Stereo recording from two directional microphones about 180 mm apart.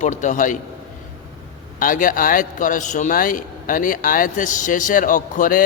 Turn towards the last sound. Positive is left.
turn(degrees=50)  # may be behind; listen again after turning